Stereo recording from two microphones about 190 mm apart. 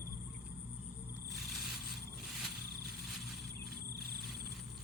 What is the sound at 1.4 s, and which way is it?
Vehicle, centre (ahead or behind).